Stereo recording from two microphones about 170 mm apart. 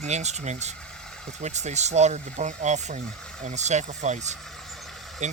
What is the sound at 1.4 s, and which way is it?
Speech, 45° right (ahead or behind).